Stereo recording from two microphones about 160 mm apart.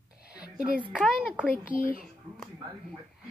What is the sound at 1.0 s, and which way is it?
Speech, centre (ahead or behind).